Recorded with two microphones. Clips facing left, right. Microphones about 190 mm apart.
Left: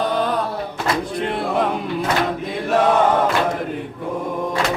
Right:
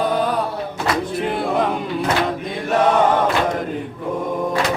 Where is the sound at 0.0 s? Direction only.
10° right (ahead or behind).